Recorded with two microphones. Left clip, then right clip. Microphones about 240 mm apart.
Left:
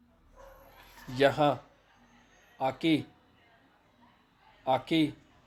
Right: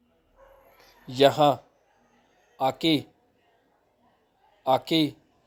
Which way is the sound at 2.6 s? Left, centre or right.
Right.